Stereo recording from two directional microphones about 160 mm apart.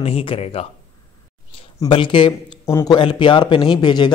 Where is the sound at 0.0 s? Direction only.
35° left (ahead or behind).